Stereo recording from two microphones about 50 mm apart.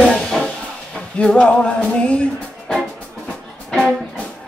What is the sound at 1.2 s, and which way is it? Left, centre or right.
Music, left.